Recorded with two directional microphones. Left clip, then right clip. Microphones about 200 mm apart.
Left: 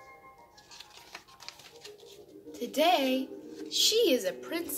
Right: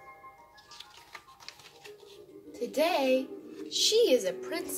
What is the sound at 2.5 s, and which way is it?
Speech, centre (ahead or behind).